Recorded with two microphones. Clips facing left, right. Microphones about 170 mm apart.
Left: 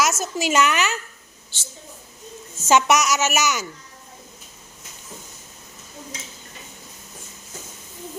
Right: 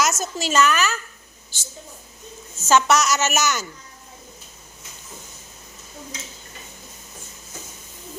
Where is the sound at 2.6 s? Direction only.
15° left (ahead or behind).